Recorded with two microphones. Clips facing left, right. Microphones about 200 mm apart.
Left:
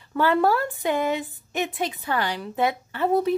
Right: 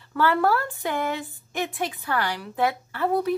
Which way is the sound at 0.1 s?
20° left (ahead or behind).